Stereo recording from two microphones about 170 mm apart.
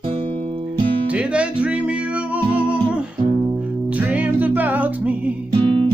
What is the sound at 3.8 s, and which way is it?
Music, 10° right (ahead or behind).